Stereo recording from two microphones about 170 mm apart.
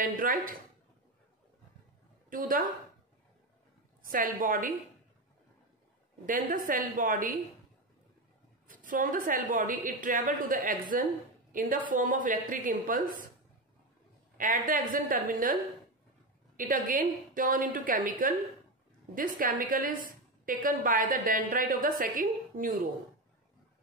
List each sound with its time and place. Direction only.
0.0 s a woman's voice: 55° right (ahead or behind)
2.2 s a woman's voice: 55° right (ahead or behind)
4.0 s a woman's voice: 55° right (ahead or behind)
6.2 s a woman's voice: 50° right (ahead or behind)
8.6 s a woman's voice: 50° right (ahead or behind)
14.3 s a sound: 50° right (ahead or behind)
14.7 s a woman's voice: 55° right (ahead or behind)
16.5 s a woman's voice: 50° right (ahead or behind)